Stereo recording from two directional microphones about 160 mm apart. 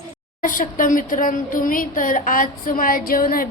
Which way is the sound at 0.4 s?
55° left (ahead or behind).